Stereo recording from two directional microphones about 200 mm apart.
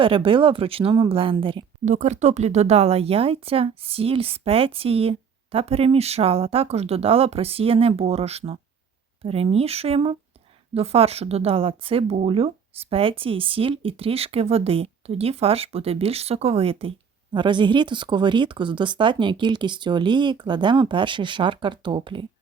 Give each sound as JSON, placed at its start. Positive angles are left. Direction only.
{"t": 0.0, "sound": "speech", "side_deg": -25}
{"t": 1.9, "sound": "speech", "side_deg": -35}